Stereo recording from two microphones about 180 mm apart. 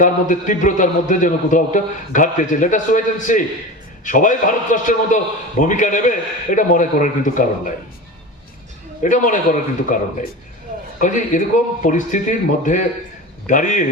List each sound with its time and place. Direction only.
0.0 s a man's voice: 45° left (ahead or behind)
9.0 s a man's voice: 45° left (ahead or behind)
11.0 s a man's voice: 45° left (ahead or behind)